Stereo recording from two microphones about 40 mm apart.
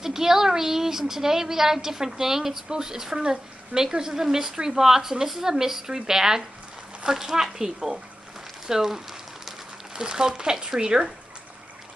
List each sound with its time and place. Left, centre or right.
0.0 s speech: centre